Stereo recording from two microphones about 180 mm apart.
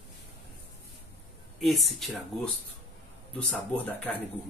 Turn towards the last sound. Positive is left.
turn(degrees=5)  # may be behind; listen again after turning